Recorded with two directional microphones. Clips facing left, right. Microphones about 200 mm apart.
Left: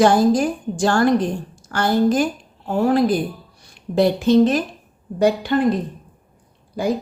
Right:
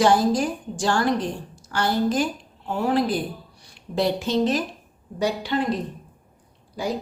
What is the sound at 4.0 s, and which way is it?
Speech, 50° left (ahead or behind).